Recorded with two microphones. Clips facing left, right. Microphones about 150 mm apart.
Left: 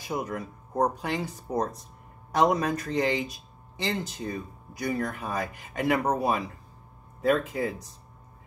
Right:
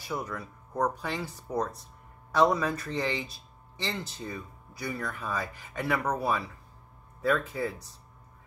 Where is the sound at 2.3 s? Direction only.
15° left (ahead or behind).